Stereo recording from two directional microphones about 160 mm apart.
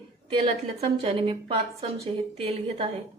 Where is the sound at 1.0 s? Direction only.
35° right (ahead or behind).